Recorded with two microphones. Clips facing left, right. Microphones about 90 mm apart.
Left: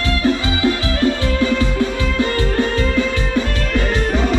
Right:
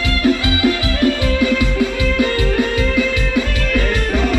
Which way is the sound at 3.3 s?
5° left (ahead or behind).